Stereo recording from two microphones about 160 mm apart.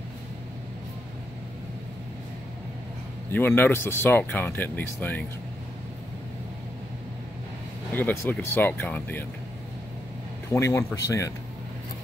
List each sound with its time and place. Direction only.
3.3 s speech: 15° left (ahead or behind)
7.9 s speech: 15° left (ahead or behind)
10.5 s speech: 20° left (ahead or behind)